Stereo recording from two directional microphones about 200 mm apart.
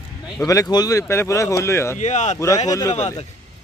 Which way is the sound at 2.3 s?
15° left (ahead or behind).